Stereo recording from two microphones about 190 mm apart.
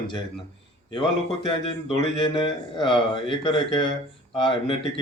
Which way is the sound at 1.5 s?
30° left (ahead or behind).